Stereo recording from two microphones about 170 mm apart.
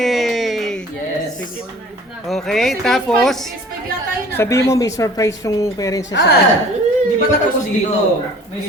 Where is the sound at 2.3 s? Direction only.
Centre (ahead or behind).